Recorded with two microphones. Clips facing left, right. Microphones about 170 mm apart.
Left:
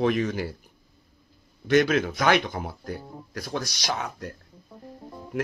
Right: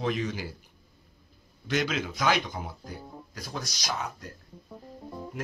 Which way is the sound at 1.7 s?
55° left (ahead or behind).